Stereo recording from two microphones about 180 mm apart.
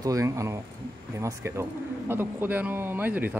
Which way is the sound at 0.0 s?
20° right (ahead or behind).